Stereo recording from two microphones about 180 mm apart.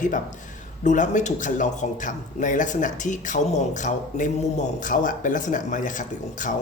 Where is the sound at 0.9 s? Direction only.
45° left (ahead or behind).